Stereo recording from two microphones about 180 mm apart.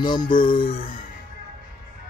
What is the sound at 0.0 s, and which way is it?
Music, 25° left (ahead or behind).